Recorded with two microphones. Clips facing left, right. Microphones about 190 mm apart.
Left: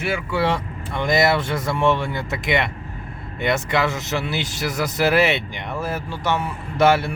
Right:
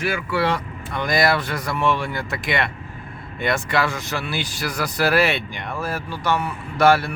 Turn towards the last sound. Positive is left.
turn(degrees=20)  # may be behind; listen again after turning